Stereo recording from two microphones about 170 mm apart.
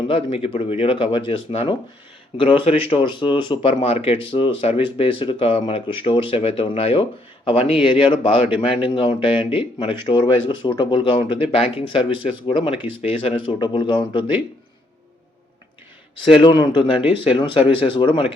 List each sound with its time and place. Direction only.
0.1 s speech: 35° left (ahead or behind)
16.2 s speech: 30° left (ahead or behind)